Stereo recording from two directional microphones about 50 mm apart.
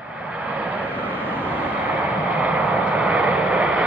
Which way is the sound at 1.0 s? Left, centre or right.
Right.